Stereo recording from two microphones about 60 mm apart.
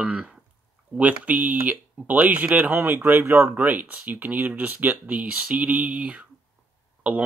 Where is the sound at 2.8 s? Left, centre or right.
Right.